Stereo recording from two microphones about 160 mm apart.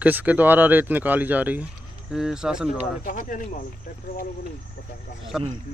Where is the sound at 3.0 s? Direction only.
55° left (ahead or behind).